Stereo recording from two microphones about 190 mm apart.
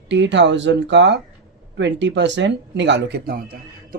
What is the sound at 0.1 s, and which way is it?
Speech, 70° right (ahead or behind).